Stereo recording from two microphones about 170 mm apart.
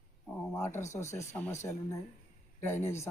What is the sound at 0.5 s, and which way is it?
A man's voice, 15° left (ahead or behind).